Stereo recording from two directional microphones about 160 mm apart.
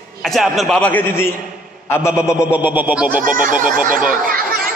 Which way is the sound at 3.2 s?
55° right (ahead or behind).